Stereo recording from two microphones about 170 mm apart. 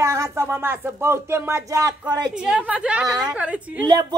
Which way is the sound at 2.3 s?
5° right (ahead or behind).